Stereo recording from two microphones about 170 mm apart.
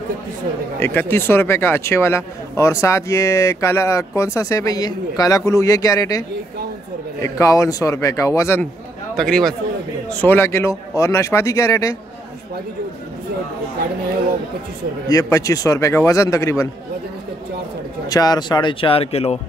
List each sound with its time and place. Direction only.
0.7 s speech: 10° left (ahead or behind)
7.2 s speech: 20° left (ahead or behind)
9.1 s speech: centre (ahead or behind)
10.2 s speech: 15° left (ahead or behind)
15.0 s speech: 20° left (ahead or behind)
18.1 s speech: 25° left (ahead or behind)